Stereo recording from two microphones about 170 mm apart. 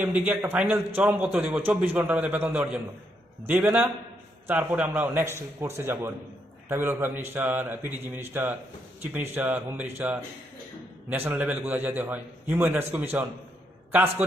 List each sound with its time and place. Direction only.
0.3 s a man's voice: 10° right (ahead or behind)